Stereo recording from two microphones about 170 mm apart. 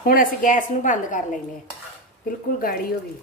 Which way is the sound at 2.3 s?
55° left (ahead or behind).